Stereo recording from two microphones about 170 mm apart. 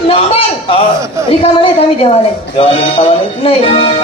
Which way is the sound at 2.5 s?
35° left (ahead or behind).